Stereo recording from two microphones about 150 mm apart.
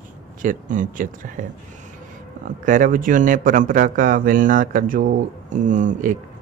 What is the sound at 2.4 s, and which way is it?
Speech, 60° right (ahead or behind).